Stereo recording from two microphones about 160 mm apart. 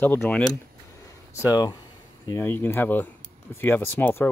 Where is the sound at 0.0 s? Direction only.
10° left (ahead or behind).